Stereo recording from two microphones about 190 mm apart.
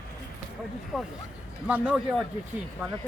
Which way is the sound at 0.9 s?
Centre (ahead or behind).